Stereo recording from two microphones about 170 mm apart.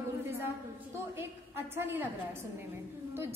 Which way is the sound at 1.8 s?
15° right (ahead or behind).